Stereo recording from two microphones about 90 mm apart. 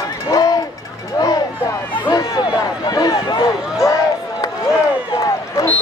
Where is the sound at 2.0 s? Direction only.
50° left (ahead or behind).